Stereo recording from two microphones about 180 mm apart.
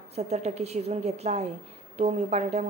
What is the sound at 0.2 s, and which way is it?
A woman's voice, 40° right (ahead or behind).